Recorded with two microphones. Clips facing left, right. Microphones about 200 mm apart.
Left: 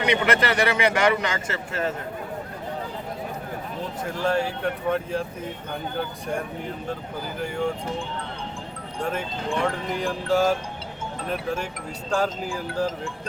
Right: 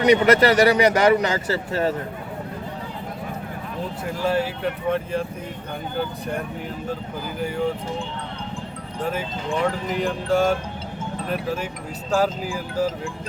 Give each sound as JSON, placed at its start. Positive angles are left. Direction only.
{"t": 0.0, "sound": "speech", "side_deg": -40}
{"t": 4.2, "sound": "speech", "side_deg": -5}
{"t": 9.0, "sound": "speech", "side_deg": -5}